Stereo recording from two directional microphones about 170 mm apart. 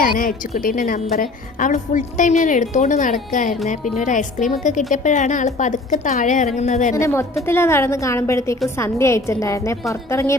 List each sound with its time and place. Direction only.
0.0 s a woman's voice: 55° left (ahead or behind)
6.9 s a woman's voice: 15° left (ahead or behind)